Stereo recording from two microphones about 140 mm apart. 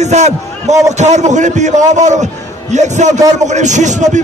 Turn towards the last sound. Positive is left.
turn(degrees=-60)  # may be behind; listen again after turning